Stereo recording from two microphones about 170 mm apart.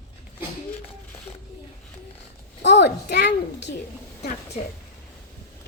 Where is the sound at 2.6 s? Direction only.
90° left.